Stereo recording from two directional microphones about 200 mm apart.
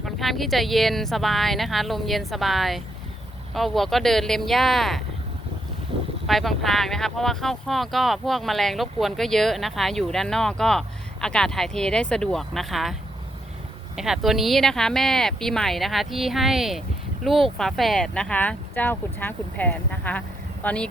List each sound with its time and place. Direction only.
0.0 s speech: centre (ahead or behind)
6.2 s speech: centre (ahead or behind)